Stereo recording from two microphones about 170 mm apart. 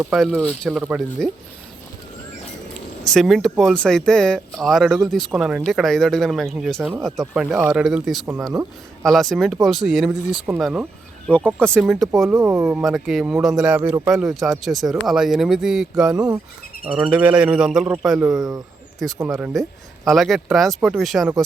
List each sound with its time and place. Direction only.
0.1 s speech: centre (ahead or behind)
3.0 s speech: centre (ahead or behind)
11.3 s speech: 5° left (ahead or behind)
12.4 s a man's voice: 15° right (ahead or behind)
12.6 s speech: 5° right (ahead or behind)
14.1 s speech: centre (ahead or behind)
16.1 s speech: 20° right (ahead or behind)
17.0 s a man's voice: 10° right (ahead or behind)
18.3 s speech: 20° right (ahead or behind)
18.9 s speech: centre (ahead or behind)